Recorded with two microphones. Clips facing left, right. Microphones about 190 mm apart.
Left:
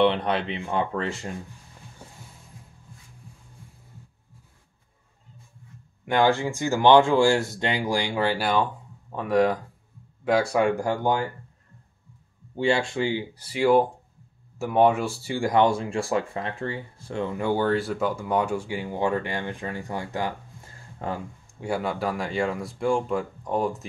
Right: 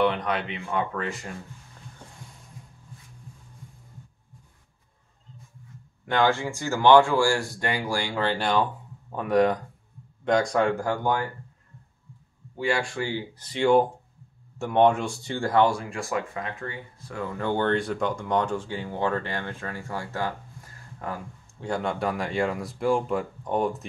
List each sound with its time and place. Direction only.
0.0 s speech: 30° left (ahead or behind)
2.0 s music: 10° left (ahead or behind)
6.0 s speech: 15° left (ahead or behind)
12.5 s speech: 25° left (ahead or behind)
17.4 s speech: 10° left (ahead or behind)
21.0 s speech: 25° left (ahead or behind)
21.5 s speech: 10° left (ahead or behind)